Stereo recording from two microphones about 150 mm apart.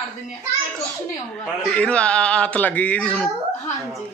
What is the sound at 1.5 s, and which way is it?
A man's voice, 5° left (ahead or behind).